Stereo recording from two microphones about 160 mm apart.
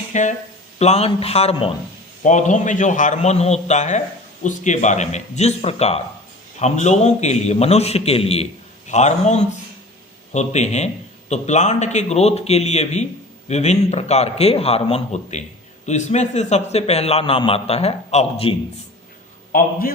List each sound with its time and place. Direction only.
0.1 s a man's voice: 50° left (ahead or behind)
2.2 s a man's voice: 50° left (ahead or behind)